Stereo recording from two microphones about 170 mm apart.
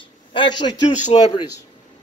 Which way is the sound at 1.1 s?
35° left (ahead or behind).